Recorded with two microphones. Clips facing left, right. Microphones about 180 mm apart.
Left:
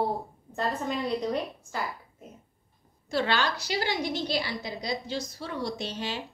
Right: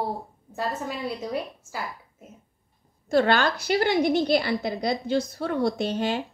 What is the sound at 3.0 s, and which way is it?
A woman's voice, 50° right (ahead or behind).